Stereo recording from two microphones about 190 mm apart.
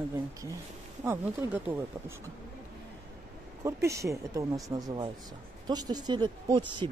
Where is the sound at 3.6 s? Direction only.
15° right (ahead or behind).